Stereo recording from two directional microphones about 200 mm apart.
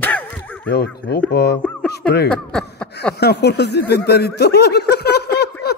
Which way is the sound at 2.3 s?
5° left (ahead or behind).